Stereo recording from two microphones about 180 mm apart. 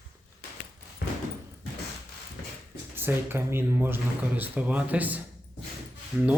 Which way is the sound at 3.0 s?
10° right (ahead or behind).